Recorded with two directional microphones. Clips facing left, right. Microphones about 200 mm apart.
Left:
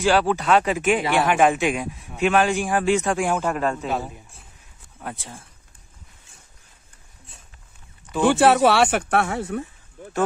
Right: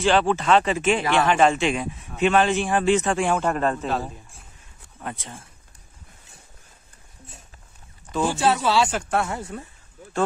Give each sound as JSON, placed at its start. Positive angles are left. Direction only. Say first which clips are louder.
{"t": 0.0, "sound": "speech", "louder": "even", "side_deg": 5}
{"t": 8.2, "sound": "speech", "louder": "left 6 dB", "side_deg": 70}